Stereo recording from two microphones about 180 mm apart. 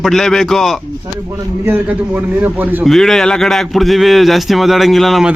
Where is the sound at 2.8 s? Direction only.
Centre (ahead or behind).